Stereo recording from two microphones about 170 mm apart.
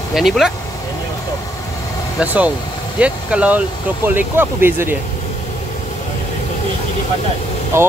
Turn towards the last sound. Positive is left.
turn(degrees=-15)  # may be behind; listen again after turning